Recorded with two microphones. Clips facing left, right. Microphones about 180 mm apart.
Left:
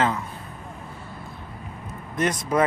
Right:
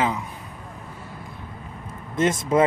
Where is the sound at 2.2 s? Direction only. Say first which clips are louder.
Right 3 dB; 25° right (ahead or behind).